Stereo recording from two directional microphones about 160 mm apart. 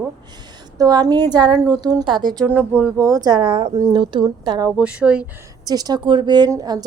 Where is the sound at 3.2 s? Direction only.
30° right (ahead or behind).